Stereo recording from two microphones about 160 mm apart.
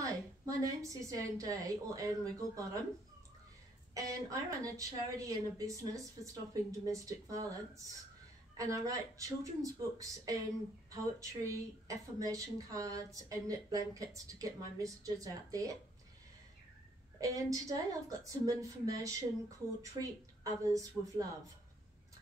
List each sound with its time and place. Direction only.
0.0 s speech: 20° right (ahead or behind)
3.9 s speech: 20° right (ahead or behind)
17.2 s speech: 20° right (ahead or behind)